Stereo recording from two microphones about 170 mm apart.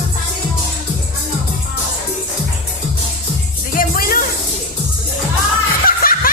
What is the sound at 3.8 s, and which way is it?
Music, 55° left (ahead or behind).